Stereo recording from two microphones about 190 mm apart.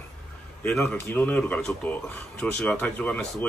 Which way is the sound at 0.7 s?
10° left (ahead or behind).